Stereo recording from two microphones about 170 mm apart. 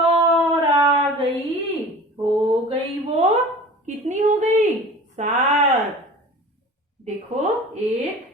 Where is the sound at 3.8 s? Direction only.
45° right (ahead or behind).